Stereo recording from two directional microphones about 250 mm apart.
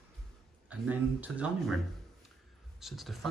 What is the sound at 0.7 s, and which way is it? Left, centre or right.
Speech, centre.